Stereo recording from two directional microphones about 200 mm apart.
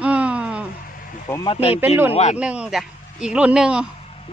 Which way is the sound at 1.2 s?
20° left (ahead or behind).